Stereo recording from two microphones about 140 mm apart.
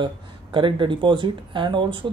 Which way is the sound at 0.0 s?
35° right (ahead or behind).